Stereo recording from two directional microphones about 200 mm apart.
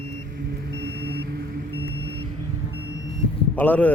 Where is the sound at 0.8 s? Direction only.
55° right (ahead or behind).